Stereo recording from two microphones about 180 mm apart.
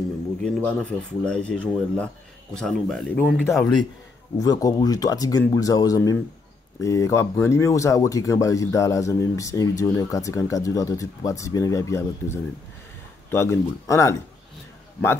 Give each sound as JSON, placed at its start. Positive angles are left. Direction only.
{"t": 0.4, "sound": "speech", "side_deg": 5}
{"t": 4.4, "sound": "speech", "side_deg": 20}